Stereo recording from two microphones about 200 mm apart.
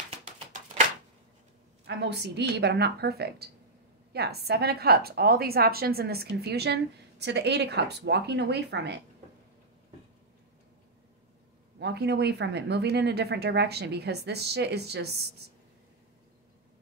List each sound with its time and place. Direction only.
0.1 s a sound: 35° right (ahead or behind)
1.9 s a woman's voice: 55° right (ahead or behind)
11.8 s speech: 55° right (ahead or behind)